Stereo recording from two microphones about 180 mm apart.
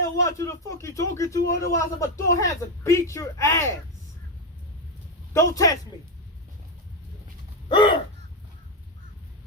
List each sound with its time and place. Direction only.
0.3 s a man's voice: 15° left (ahead or behind)
5.3 s a man's voice: 15° left (ahead or behind)
7.7 s a sound: 25° left (ahead or behind)